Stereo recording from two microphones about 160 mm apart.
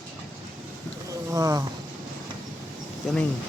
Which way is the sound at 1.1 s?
20° right (ahead or behind).